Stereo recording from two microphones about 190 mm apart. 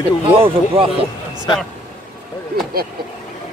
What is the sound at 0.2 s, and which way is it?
Speech, 30° right (ahead or behind).